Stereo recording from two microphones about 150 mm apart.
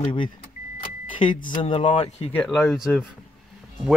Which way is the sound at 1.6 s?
40° left (ahead or behind).